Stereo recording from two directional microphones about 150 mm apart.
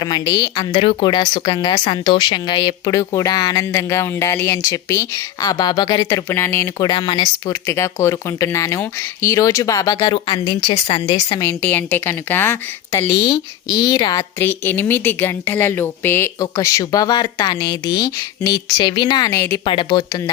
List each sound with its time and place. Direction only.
0.0 s speech: 25° left (ahead or behind)
7.7 s speech: 20° left (ahead or behind)
11.6 s speech: 10° left (ahead or behind)
14.4 s speech: 15° left (ahead or behind)
19.6 s speech: 35° left (ahead or behind)